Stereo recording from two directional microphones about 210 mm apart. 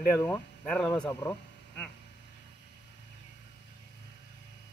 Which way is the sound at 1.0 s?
10° left (ahead or behind).